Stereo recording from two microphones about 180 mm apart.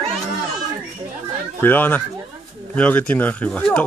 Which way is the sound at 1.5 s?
10° left (ahead or behind).